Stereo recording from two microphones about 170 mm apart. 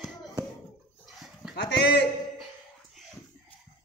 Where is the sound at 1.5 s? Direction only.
80° left.